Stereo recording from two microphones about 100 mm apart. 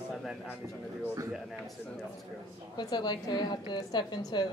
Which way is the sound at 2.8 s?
45° left (ahead or behind).